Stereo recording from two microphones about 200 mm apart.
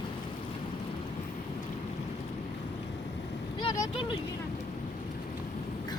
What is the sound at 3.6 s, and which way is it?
Vehicle, 25° left (ahead or behind).